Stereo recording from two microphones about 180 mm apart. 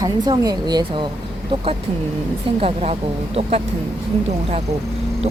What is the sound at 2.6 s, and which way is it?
Speech, 35° right (ahead or behind).